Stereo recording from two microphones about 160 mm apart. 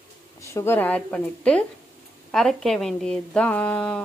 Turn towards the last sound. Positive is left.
turn(degrees=5)  # may be behind; listen again after turning